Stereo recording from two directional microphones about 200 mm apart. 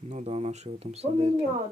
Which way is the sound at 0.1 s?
35° right (ahead or behind).